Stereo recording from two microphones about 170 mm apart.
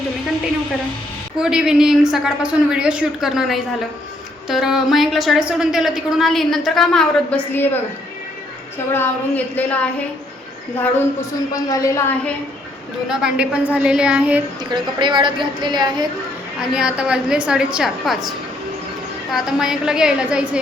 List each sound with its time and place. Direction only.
1.4 s a woman's voice: 5° right (ahead or behind); by 7.8 s 10° left (ahead or behind)
8.9 s speech: 10° left (ahead or behind)
11.5 s a woman's voice: 20° left (ahead or behind)
13.1 s a woman's voice: 5° right (ahead or behind)
14.6 s a woman's voice: 25° right (ahead or behind)
16.6 s a woman's voice: 5° right (ahead or behind)